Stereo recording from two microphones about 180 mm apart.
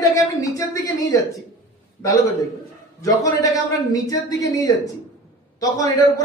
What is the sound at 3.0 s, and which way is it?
A man's voice, 20° left (ahead or behind).